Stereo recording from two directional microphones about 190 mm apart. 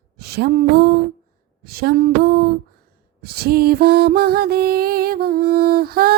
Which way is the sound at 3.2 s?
55° right (ahead or behind).